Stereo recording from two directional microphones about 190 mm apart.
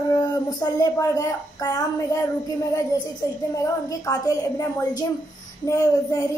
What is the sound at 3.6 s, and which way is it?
A woman's voice, 15° left (ahead or behind).